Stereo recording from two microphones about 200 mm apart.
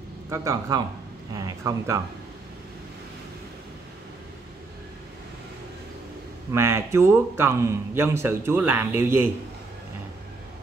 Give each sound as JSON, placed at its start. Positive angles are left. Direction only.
{"t": 0.3, "sound": "a man's voice", "side_deg": -15}
{"t": 6.5, "sound": "a man's voice", "side_deg": -15}